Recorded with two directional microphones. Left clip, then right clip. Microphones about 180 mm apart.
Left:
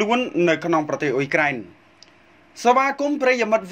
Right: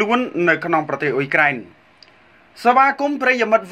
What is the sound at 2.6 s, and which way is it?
Speech, 45° left (ahead or behind).